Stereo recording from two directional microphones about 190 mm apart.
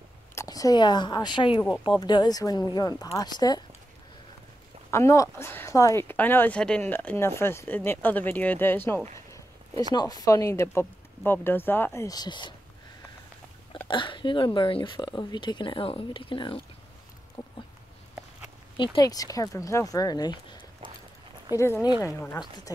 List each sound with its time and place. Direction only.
0.3 s speech: 15° left (ahead or behind)
4.9 s speech: 15° left (ahead or behind)
13.8 s speech: 25° left (ahead or behind)
17.4 s a sound: 20° left (ahead or behind)
18.8 s speech: 20° left (ahead or behind)